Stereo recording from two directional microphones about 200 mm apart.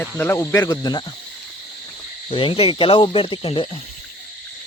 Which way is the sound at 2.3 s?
25° left (ahead or behind).